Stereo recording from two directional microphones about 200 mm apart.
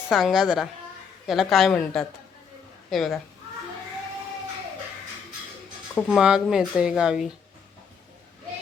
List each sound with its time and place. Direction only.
0.1 s speech: centre (ahead or behind)
5.9 s speech: 5° left (ahead or behind)